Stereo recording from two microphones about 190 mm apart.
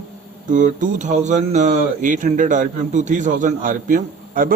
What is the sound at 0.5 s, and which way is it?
A man's voice, 40° right (ahead or behind).